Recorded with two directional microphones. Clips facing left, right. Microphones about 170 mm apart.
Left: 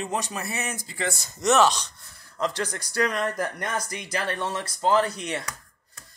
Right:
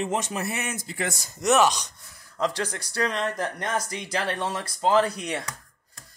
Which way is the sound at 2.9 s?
30° right (ahead or behind).